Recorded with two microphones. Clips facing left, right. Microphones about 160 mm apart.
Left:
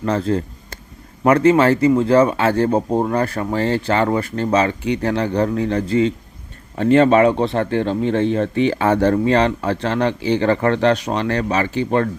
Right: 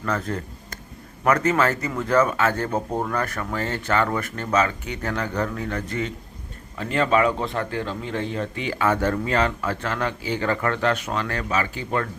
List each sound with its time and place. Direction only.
0.0 s speech: 30° left (ahead or behind)